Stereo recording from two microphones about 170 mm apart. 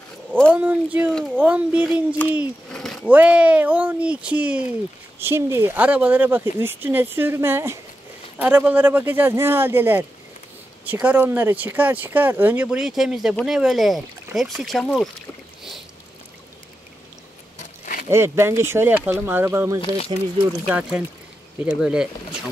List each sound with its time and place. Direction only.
0.5 s a sound: 10° right (ahead or behind)
1.3 s speech: 10° right (ahead or behind)
2.7 s a sound: 5° left (ahead or behind)
3.1 s speech: 10° right (ahead or behind)
18.0 s speech: 15° right (ahead or behind)
20.1 s speech: 30° right (ahead or behind)
20.6 s speech: 10° right (ahead or behind)